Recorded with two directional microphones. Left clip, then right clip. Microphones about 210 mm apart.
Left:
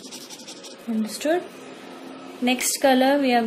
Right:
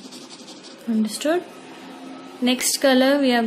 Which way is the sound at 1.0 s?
15° right (ahead or behind).